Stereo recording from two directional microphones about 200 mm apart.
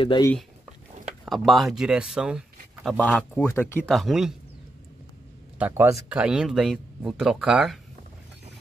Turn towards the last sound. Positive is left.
turn(degrees=-5)  # may be behind; listen again after turning